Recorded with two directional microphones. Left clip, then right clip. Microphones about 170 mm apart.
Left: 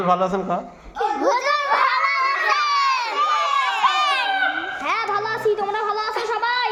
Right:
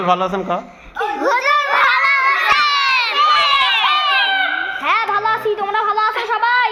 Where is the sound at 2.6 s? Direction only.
45° left (ahead or behind).